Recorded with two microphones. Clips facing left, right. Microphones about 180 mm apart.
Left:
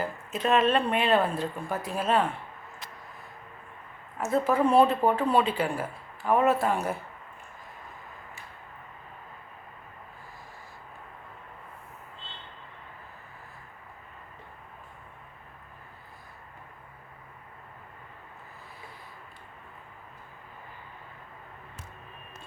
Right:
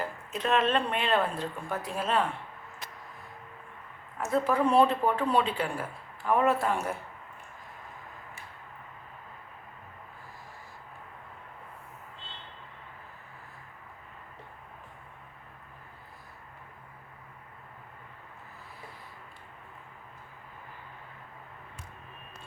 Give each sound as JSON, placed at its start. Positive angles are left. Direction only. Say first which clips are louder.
{"t": 0.3, "sound": "speech", "louder": "left 3 dB", "side_deg": 5}
{"t": 4.3, "sound": "a woman's voice", "louder": "left 2 dB", "side_deg": 5}